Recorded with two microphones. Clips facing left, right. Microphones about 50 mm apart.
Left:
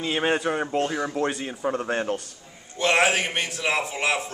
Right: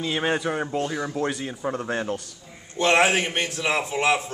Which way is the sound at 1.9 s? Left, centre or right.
Left.